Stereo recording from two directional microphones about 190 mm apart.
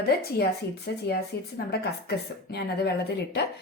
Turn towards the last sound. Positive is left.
turn(degrees=60)  # may be behind; listen again after turning